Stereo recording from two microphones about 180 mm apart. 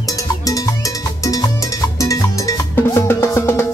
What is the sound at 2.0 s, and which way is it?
Cowbell, 15° left (ahead or behind).